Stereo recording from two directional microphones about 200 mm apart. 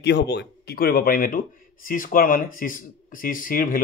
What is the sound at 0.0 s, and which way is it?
A man's voice, 60° left (ahead or behind).